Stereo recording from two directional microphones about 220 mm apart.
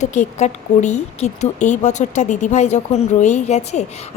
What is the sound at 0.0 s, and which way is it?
A woman's voice, 35° left (ahead or behind).